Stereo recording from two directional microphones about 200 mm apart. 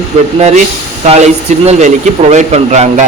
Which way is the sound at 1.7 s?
35° right (ahead or behind).